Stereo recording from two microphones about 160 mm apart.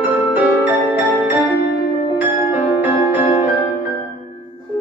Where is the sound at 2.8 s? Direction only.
10° right (ahead or behind).